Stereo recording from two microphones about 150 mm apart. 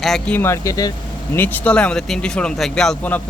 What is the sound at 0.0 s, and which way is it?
Speech, centre (ahead or behind).